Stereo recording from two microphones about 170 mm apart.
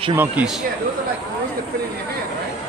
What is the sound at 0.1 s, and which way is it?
Speech, 10° right (ahead or behind).